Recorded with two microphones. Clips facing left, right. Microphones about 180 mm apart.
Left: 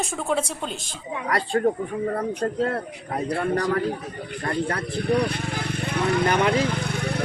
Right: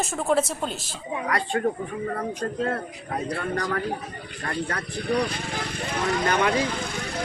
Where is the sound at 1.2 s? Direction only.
35° left (ahead or behind).